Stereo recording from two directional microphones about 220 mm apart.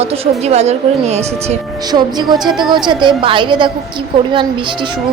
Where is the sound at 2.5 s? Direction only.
Centre (ahead or behind).